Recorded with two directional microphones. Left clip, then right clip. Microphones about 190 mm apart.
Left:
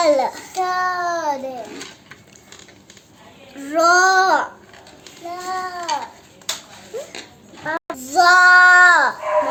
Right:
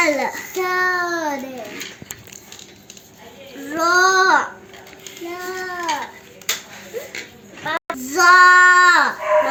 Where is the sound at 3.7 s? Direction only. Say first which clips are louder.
Left 2 dB; 35° left (ahead or behind).